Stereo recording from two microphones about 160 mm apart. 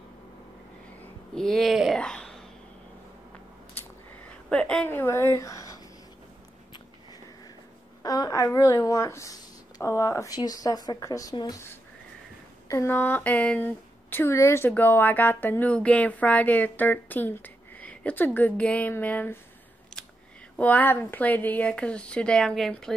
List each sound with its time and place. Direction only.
1.3 s a sound: 5° left (ahead or behind)
4.5 s speech: 5° left (ahead or behind)
8.0 s speech: 25° left (ahead or behind)
20.5 s speech: 10° left (ahead or behind)